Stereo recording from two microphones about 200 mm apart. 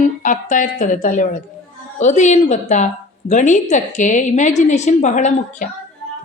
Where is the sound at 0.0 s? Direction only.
40° left (ahead or behind).